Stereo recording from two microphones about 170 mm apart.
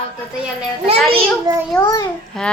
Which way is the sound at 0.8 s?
35° right (ahead or behind).